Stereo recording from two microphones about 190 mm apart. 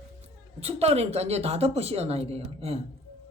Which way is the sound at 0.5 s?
35° right (ahead or behind).